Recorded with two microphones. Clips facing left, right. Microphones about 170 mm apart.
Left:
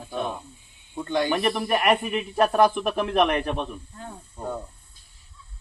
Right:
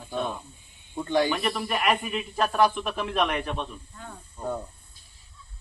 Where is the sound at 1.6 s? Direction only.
55° left (ahead or behind).